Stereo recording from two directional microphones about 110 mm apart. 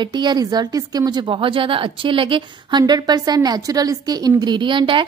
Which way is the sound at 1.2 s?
55° right (ahead or behind).